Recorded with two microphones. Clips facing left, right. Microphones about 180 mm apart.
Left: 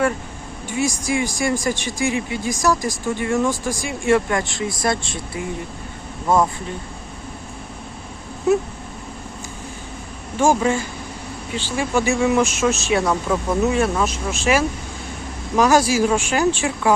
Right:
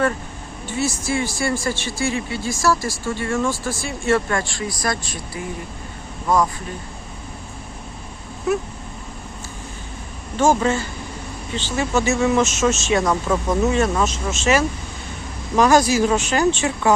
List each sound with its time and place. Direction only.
0.7 s speech: 15° left (ahead or behind)
10.3 s speech: 10° left (ahead or behind)